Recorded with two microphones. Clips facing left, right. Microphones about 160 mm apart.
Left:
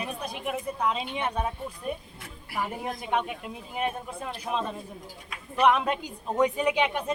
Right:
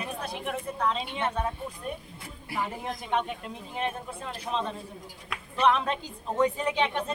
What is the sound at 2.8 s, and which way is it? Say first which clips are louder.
A woman's voice: left 2 dB; 10° left (ahead or behind).